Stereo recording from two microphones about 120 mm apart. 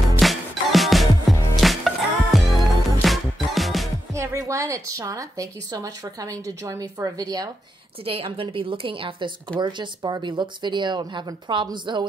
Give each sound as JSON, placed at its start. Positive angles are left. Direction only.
{"t": 0.2, "sound": "music", "side_deg": 0}
{"t": 4.1, "sound": "speech", "side_deg": -25}
{"t": 8.0, "sound": "a woman's voice", "side_deg": -50}